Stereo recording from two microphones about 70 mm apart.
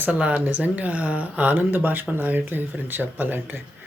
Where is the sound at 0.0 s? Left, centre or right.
Right.